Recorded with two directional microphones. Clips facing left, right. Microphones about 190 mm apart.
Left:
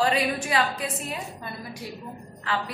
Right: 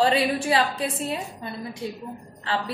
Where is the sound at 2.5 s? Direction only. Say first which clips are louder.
Right 2 dB; 30° right (ahead or behind).